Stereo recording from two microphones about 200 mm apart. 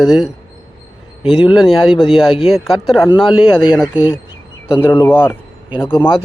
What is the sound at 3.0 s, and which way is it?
Speech, 20° left (ahead or behind).